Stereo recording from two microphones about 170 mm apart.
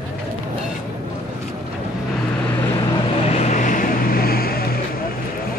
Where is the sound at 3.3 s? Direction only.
45° left (ahead or behind); by 4.6 s 65° left (ahead or behind).